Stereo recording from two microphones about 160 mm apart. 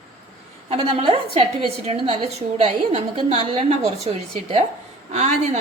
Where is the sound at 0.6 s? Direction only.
35° right (ahead or behind).